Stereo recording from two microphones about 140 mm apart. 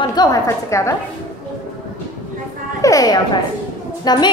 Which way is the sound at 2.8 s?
25° left (ahead or behind).